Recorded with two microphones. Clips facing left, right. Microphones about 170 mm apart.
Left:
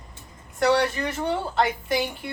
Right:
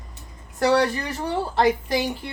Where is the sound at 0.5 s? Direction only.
35° right (ahead or behind).